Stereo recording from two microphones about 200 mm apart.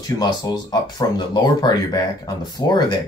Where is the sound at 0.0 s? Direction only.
20° left (ahead or behind).